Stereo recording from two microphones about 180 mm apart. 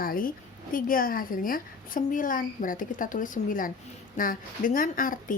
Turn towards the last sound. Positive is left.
turn(degrees=50)  # may be behind; listen again after turning